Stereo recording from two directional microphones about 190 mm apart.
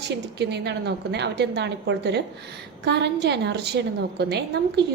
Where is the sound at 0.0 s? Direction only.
60° right (ahead or behind).